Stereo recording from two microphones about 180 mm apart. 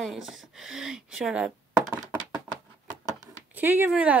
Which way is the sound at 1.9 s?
15° right (ahead or behind).